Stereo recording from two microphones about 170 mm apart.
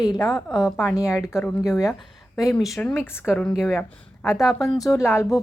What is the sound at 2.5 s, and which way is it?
Speech, centre (ahead or behind).